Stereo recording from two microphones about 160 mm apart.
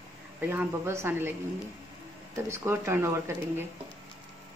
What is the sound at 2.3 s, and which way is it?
Speech, 15° right (ahead or behind).